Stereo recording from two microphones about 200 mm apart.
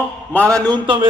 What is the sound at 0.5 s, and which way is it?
Speech, 20° right (ahead or behind).